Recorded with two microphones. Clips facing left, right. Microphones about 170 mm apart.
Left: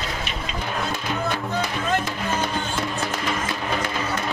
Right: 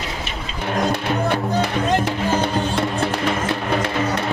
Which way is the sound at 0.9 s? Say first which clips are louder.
Right 5 dB; 65° right (ahead or behind).